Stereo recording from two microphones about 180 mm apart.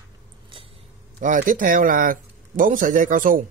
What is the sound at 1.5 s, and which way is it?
Speech, 50° right (ahead or behind).